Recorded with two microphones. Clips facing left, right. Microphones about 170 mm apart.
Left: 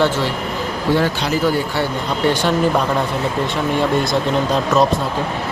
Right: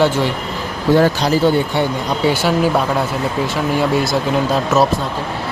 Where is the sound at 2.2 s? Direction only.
10° right (ahead or behind).